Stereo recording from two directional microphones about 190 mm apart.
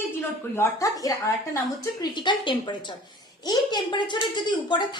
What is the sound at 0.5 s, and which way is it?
A woman's voice, 15° left (ahead or behind).